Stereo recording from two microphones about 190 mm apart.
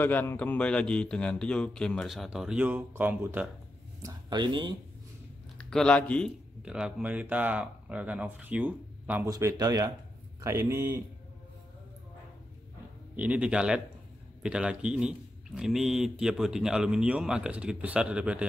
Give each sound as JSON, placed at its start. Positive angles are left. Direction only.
{"t": 0.0, "sound": "speech", "side_deg": 10}
{"t": 4.0, "sound": "speech", "side_deg": -25}
{"t": 5.6, "sound": "speech", "side_deg": 5}
{"t": 6.6, "sound": "speech", "side_deg": -5}
{"t": 13.1, "sound": "speech", "side_deg": -5}